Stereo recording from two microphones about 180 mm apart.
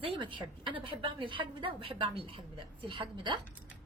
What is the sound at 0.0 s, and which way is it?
A woman's voice, 30° right (ahead or behind).